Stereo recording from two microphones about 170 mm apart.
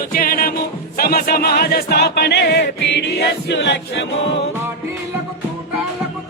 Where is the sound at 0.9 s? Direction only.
60° left (ahead or behind); by 4.0 s 90° left.